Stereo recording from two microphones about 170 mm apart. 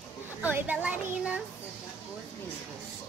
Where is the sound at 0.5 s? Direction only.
10° right (ahead or behind).